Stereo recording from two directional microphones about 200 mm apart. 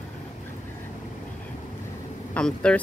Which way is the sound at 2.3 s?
5° left (ahead or behind).